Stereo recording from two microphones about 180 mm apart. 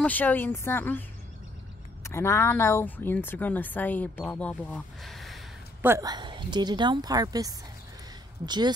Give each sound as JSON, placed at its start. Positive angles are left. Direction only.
{"t": 0.0, "sound": "speech", "side_deg": 10}
{"t": 2.0, "sound": "speech", "side_deg": 15}
{"t": 5.8, "sound": "a woman's voice", "side_deg": -15}